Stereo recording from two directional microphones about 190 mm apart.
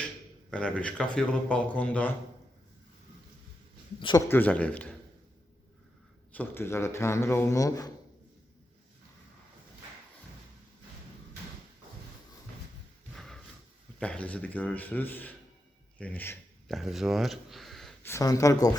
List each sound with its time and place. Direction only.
0.5 s speech: 5° left (ahead or behind)
4.3 s speech: 10° left (ahead or behind)
6.3 s speech: 10° left (ahead or behind)
13.1 s a sound: centre (ahead or behind)
14.0 s speech: 5° left (ahead or behind)
16.0 s a sound: 10° left (ahead or behind)
16.7 s speech: centre (ahead or behind)
18.1 s speech: 15° left (ahead or behind)